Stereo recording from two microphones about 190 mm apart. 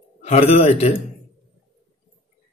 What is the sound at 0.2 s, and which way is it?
Speech, 35° left (ahead or behind).